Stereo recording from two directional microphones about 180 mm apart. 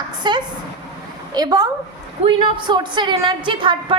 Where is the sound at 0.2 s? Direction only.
25° right (ahead or behind).